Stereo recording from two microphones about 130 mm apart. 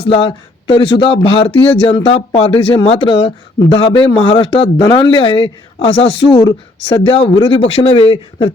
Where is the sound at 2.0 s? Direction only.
55° left (ahead or behind).